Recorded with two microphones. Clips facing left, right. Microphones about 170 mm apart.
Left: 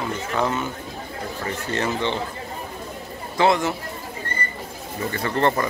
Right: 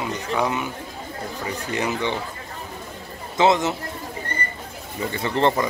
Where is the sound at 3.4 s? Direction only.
20° right (ahead or behind).